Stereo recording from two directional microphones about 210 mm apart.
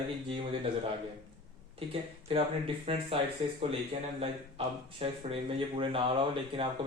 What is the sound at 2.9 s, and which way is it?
Speech, 30° right (ahead or behind).